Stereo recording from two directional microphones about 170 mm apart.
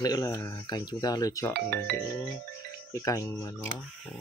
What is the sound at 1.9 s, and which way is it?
Music, 70° right (ahead or behind).